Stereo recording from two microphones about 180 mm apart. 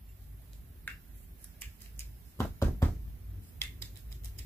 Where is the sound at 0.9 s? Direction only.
10° left (ahead or behind).